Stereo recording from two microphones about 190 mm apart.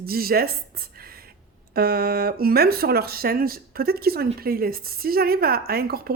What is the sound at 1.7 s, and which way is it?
Speech, 55° right (ahead or behind).